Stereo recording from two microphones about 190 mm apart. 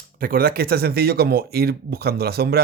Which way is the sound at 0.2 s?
50° right (ahead or behind).